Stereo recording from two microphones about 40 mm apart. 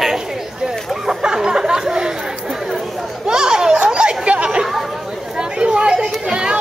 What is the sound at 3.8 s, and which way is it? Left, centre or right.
Chatter, right.